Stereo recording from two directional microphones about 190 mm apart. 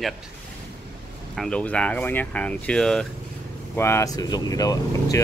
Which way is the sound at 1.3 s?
5° left (ahead or behind).